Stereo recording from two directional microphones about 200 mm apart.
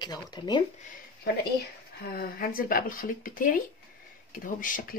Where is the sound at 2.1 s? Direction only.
50° left (ahead or behind).